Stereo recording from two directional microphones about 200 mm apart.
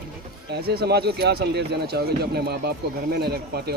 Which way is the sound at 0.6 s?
50° right (ahead or behind).